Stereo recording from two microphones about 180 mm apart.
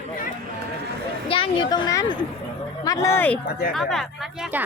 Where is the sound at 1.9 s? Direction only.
20° left (ahead or behind).